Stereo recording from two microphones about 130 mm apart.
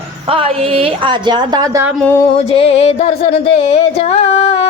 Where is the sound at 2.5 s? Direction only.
50° left (ahead or behind).